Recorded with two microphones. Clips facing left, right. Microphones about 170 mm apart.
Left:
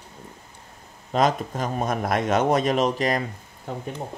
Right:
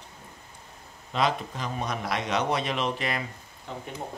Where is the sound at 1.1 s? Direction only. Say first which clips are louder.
Left 5 dB; 45° left (ahead or behind).